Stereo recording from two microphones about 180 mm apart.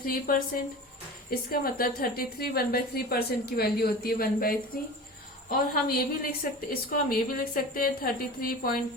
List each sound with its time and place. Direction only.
0.0 s a woman's voice: 55° left (ahead or behind)